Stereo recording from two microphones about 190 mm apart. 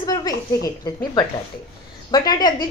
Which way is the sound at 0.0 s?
20° left (ahead or behind).